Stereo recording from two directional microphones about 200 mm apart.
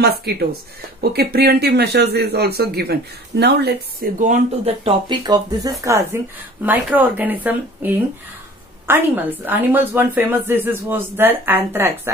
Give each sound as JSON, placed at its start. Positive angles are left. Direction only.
{"t": 0.0, "sound": "a man's voice", "side_deg": -55}